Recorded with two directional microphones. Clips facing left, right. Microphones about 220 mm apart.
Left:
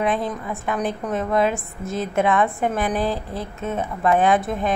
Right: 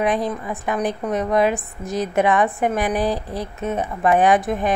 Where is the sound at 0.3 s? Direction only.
10° right (ahead or behind).